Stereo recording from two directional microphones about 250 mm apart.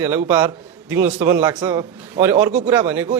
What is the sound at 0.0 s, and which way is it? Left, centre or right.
Speech, centre.